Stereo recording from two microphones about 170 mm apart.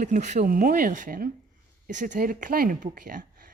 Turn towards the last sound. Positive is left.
turn(degrees=-55)  # may be behind; listen again after turning